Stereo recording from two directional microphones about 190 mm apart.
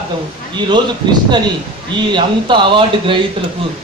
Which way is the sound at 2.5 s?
25° right (ahead or behind).